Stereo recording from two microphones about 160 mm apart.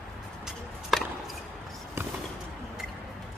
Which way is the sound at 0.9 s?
Centre (ahead or behind).